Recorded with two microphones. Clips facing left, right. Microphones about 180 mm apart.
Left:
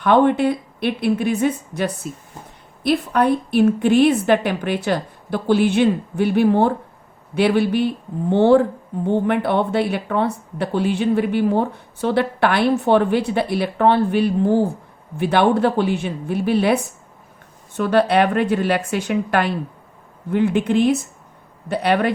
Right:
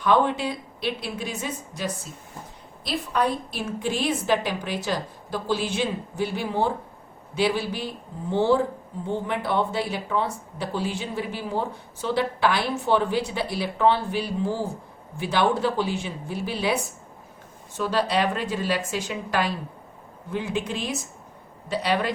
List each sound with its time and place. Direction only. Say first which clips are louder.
0.0 s speech: left 7 dB; 60° left (ahead or behind)